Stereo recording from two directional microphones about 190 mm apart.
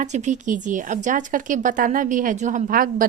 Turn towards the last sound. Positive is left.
turn(degrees=-45)  # may be behind; listen again after turning